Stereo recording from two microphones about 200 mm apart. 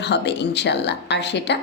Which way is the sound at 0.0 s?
60° left (ahead or behind).